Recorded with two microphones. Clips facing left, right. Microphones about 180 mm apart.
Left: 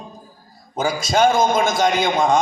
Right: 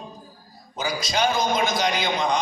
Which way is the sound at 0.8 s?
50° left (ahead or behind).